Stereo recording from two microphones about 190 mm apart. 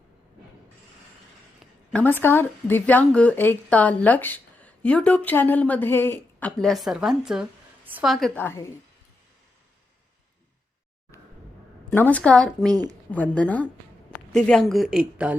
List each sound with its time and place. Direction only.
1.5 s a woman's voice: 5° left (ahead or behind)
8.4 s speech: 15° left (ahead or behind)
11.1 s a sound: 15° left (ahead or behind)
11.9 s speech: 10° left (ahead or behind)
12.6 s a woman's voice: 20° right (ahead or behind)
13.1 s speech: 10° left (ahead or behind)